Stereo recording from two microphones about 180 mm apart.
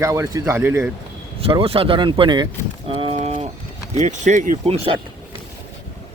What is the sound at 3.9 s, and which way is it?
Speech, 40° right (ahead or behind).